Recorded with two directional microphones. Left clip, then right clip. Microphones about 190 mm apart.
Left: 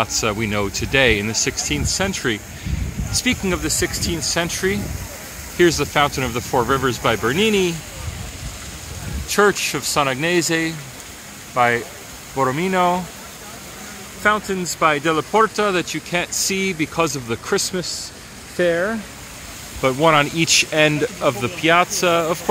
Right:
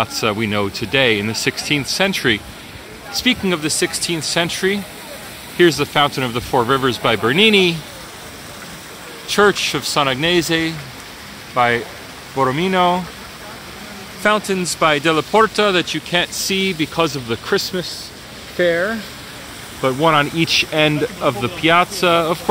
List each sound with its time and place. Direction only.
0.0 s speech: 5° right (ahead or behind)
9.3 s speech: centre (ahead or behind)
14.2 s speech: 15° right (ahead or behind)